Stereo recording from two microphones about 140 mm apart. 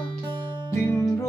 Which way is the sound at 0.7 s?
20° left (ahead or behind).